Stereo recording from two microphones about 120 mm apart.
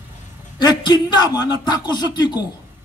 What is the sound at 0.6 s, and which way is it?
A man's voice, 35° left (ahead or behind).